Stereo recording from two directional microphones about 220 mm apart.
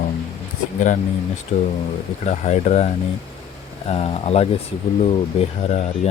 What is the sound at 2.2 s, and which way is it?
Speech, 30° left (ahead or behind).